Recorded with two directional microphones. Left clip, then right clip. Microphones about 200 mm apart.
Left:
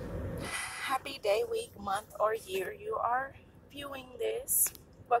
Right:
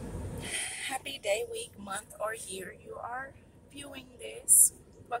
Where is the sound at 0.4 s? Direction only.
10° right (ahead or behind).